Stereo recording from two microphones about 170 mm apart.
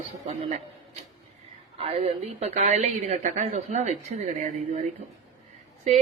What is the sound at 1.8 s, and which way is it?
A woman's voice, 35° right (ahead or behind).